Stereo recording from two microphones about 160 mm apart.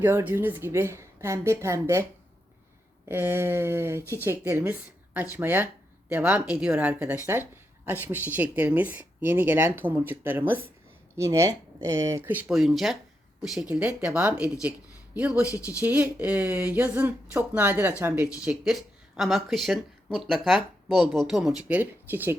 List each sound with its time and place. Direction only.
0.0 s speech: 15° right (ahead or behind)
3.1 s speech: 15° right (ahead or behind)
15.4 s speech: 20° left (ahead or behind)
15.8 s speech: 10° right (ahead or behind)